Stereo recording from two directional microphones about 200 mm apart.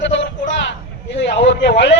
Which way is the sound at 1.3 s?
60° left (ahead or behind).